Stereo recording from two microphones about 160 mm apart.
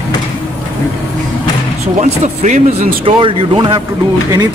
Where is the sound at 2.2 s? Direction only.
50° right (ahead or behind).